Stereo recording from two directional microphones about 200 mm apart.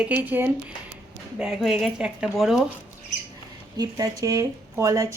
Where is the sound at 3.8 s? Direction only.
20° right (ahead or behind).